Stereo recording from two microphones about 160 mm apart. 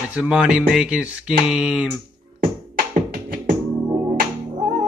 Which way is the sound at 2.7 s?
60° right (ahead or behind).